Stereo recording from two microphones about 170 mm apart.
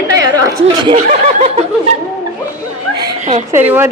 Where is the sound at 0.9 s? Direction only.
40° right (ahead or behind).